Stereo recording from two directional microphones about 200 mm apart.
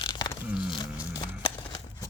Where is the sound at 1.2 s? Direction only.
15° left (ahead or behind).